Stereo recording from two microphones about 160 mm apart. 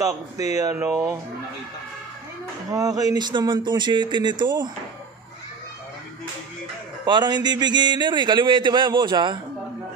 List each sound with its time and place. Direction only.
0.0 s a man's voice: 20° right (ahead or behind)
2.7 s a man's voice: 25° right (ahead or behind)
7.1 s a man's voice: 30° right (ahead or behind)